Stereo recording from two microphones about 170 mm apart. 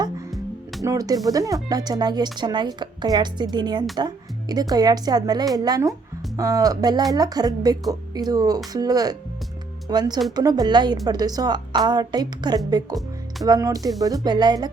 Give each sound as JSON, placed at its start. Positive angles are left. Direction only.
{"t": 0.3, "sound": "music", "side_deg": 0}
{"t": 0.9, "sound": "speech", "side_deg": -20}